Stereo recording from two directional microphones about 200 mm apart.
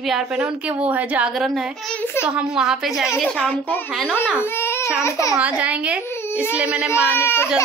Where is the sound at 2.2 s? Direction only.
5° right (ahead or behind).